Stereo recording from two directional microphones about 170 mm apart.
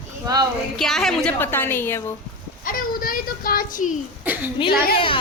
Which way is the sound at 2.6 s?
55° left (ahead or behind).